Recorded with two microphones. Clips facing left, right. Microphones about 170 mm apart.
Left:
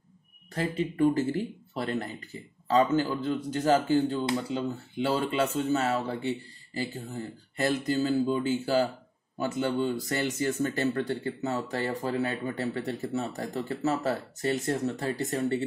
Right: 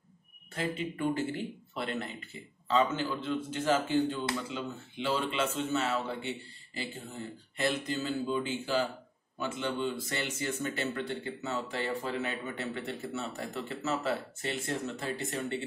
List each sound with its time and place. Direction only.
0.6 s speech: 40° left (ahead or behind)